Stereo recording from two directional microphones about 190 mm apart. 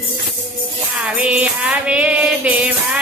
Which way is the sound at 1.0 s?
5° right (ahead or behind).